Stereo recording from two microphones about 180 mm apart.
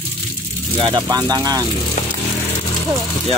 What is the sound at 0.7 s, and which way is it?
Speech, 25° right (ahead or behind).